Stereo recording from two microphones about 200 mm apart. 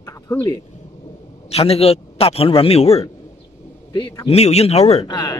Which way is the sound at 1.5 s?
30° left (ahead or behind).